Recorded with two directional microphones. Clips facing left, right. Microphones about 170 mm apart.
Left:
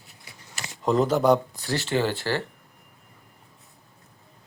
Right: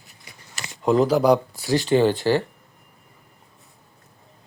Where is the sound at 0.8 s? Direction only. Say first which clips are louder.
Right 3 dB; centre (ahead or behind).